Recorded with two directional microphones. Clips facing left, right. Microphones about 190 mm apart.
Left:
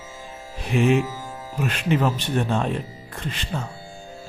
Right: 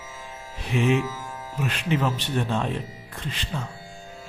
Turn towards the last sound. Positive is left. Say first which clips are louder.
# left 3 dB
turn(degrees=50)  # may be behind; listen again after turning